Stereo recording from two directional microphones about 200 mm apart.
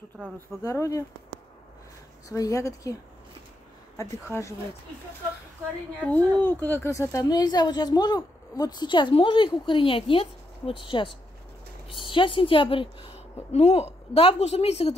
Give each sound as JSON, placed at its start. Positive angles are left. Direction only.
{"t": 0.7, "sound": "speech", "side_deg": 15}
{"t": 2.2, "sound": "speech", "side_deg": 15}
{"t": 4.0, "sound": "speech", "side_deg": 15}
{"t": 6.0, "sound": "a woman's voice", "side_deg": 10}